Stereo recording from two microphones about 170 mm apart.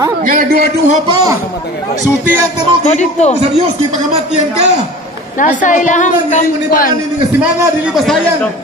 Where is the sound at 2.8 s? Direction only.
40° left (ahead or behind).